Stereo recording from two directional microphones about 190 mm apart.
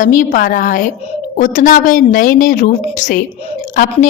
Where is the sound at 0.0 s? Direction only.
45° left (ahead or behind).